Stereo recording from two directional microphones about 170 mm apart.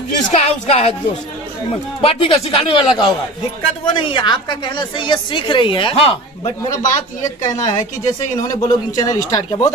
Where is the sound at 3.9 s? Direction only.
30° left (ahead or behind).